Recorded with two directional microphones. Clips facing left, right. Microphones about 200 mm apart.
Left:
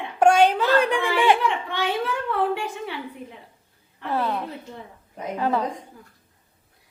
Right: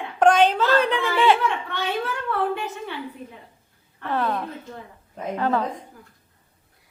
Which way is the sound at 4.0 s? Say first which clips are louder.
Even; 10° left (ahead or behind).